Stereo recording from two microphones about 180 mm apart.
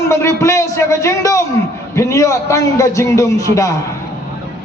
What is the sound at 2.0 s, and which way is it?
A man's voice, 15° left (ahead or behind).